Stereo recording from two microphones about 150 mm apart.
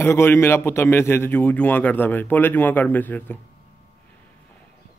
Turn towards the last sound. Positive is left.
turn(degrees=10)  # may be behind; listen again after turning